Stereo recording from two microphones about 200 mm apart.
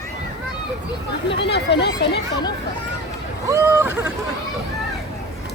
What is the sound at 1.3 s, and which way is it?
Speech, 60° left (ahead or behind).